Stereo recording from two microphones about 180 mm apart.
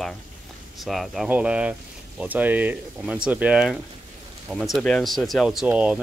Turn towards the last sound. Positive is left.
turn(degrees=-5)  # may be behind; listen again after turning